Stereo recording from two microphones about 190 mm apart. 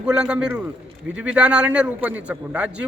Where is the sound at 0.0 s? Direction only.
5° right (ahead or behind).